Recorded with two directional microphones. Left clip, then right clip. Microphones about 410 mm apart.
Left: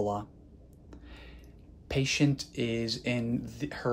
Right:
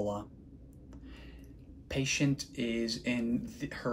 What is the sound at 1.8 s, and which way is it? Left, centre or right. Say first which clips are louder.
Speech: left 3 dB; left.